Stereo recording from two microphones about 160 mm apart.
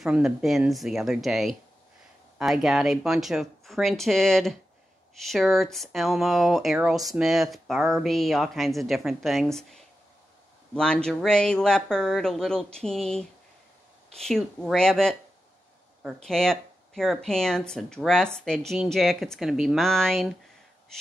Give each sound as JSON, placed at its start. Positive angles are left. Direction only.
{"t": 0.0, "sound": "speech", "side_deg": -5}